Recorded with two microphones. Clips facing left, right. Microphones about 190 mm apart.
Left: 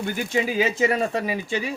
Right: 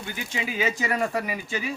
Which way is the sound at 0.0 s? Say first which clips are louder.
Left 8 dB; 45° left (ahead or behind).